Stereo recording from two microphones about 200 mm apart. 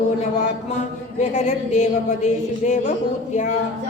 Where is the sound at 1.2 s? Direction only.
35° left (ahead or behind).